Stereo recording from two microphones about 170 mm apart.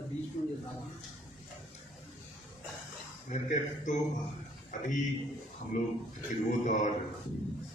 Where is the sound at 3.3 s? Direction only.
45° left (ahead or behind).